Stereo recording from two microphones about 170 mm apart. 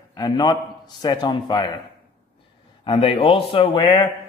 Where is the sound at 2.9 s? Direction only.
30° left (ahead or behind).